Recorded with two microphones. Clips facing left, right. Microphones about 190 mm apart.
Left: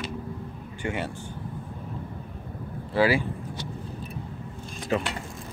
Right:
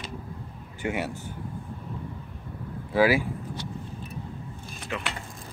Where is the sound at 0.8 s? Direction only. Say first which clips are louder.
Right 1 dB; 10° right (ahead or behind).